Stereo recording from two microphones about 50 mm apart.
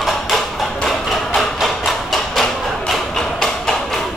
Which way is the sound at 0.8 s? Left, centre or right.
Centre.